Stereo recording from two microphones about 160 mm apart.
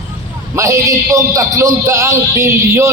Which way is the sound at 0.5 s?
20° right (ahead or behind).